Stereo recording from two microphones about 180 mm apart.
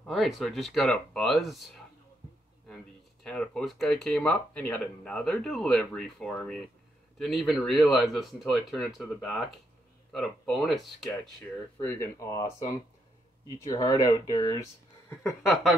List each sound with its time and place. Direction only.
0.0 s speech: centre (ahead or behind)
3.3 s speech: 5° left (ahead or behind)
11.8 s speech: 10° left (ahead or behind)
13.7 s speech: 25° left (ahead or behind)